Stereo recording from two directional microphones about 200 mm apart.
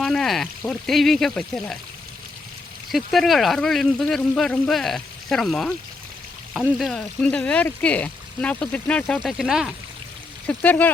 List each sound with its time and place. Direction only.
0.0 s speech: centre (ahead or behind)
2.9 s speech: centre (ahead or behind)